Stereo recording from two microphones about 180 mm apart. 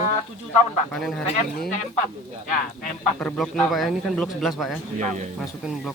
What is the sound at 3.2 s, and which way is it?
A man's voice, centre (ahead or behind).